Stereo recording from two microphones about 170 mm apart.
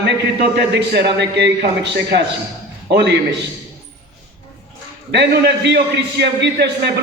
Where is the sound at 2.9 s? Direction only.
90° right.